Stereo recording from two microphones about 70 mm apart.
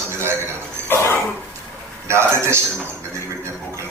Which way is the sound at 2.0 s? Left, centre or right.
Right.